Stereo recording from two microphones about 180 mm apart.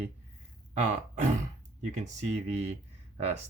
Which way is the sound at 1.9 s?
40° right (ahead or behind).